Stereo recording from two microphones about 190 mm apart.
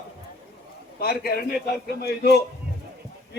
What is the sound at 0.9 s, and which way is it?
A man's voice, 55° left (ahead or behind).